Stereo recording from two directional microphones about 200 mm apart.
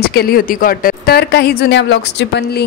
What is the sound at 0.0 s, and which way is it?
Speech, 50° left (ahead or behind).